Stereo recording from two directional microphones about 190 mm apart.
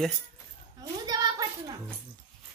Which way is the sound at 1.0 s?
20° right (ahead or behind).